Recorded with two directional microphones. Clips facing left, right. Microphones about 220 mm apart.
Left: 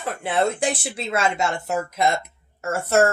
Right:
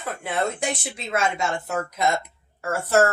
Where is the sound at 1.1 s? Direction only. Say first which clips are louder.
Left 1 dB; 30° left (ahead or behind).